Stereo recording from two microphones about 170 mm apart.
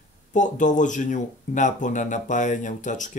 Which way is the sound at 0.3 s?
45° left (ahead or behind).